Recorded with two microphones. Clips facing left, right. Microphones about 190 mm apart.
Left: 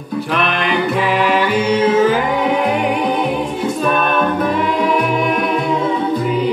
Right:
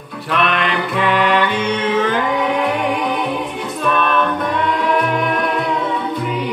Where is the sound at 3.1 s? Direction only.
40° left (ahead or behind).